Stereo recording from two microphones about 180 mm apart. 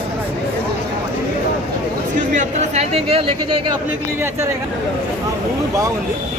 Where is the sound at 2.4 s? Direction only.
35° right (ahead or behind).